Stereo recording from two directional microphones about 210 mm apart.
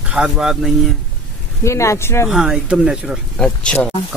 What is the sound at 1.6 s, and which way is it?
Speech, 15° left (ahead or behind).